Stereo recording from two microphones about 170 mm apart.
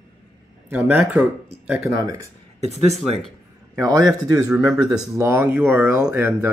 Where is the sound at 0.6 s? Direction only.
10° right (ahead or behind).